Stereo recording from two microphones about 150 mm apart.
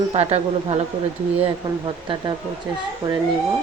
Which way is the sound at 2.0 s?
30° right (ahead or behind).